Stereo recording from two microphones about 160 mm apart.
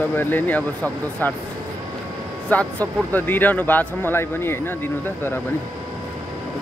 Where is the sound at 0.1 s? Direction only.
10° left (ahead or behind).